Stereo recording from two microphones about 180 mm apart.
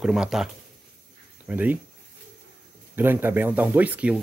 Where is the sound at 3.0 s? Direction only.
10° right (ahead or behind).